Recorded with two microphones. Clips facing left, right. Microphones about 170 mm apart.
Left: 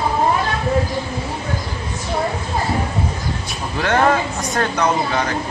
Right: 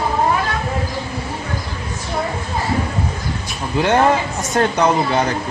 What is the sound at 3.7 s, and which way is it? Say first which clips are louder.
Speech: right 2 dB; 20° right (ahead or behind).